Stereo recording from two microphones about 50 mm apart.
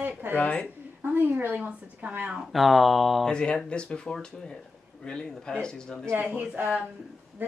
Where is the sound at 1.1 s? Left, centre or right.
Right.